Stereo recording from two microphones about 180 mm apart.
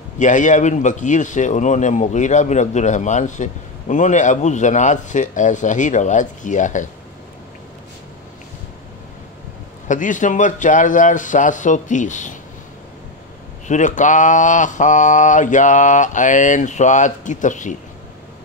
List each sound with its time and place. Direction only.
0.2 s speech: 45° left (ahead or behind)
9.8 s speech: 45° left (ahead or behind)
13.7 s speech: 40° left (ahead or behind)